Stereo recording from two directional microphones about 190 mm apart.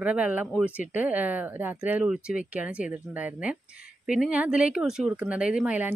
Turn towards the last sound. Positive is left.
turn(degrees=-5)  # may be behind; listen again after turning